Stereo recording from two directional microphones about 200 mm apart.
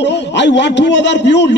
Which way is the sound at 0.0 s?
60° left (ahead or behind).